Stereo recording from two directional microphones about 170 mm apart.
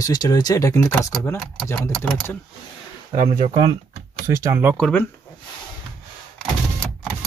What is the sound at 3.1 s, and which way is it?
Speech, 40° right (ahead or behind).